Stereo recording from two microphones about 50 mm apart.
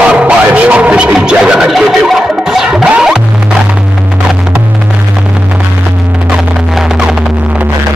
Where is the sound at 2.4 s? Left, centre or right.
Centre.